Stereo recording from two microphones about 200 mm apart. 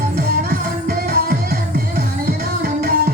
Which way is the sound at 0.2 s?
45° right (ahead or behind).